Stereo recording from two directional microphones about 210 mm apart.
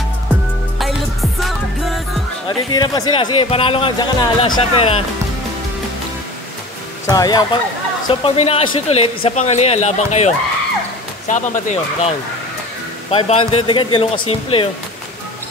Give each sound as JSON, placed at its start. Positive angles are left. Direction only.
{"t": 0.7, "sound": "music", "side_deg": 0}
{"t": 2.4, "sound": "speech", "side_deg": 20}
{"t": 7.1, "sound": "speech", "side_deg": 20}